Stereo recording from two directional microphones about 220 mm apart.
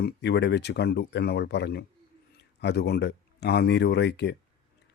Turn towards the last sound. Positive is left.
turn(degrees=50)  # may be behind; listen again after turning